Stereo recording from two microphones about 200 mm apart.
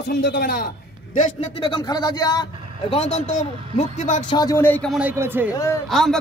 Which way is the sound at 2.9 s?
30° left (ahead or behind).